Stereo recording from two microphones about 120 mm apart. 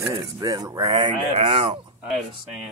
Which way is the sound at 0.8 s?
45° right (ahead or behind).